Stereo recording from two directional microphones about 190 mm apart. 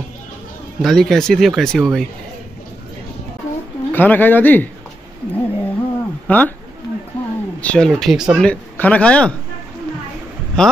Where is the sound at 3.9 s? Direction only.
10° left (ahead or behind).